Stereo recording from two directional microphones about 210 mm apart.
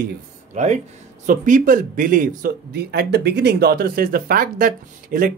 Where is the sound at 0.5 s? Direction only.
35° right (ahead or behind).